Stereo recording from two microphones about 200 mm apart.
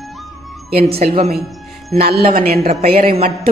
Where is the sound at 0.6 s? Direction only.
50° right (ahead or behind).